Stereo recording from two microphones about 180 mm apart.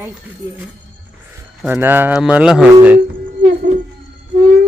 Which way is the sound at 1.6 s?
10° right (ahead or behind).